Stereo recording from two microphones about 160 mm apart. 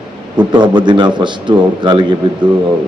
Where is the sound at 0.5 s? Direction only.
30° right (ahead or behind).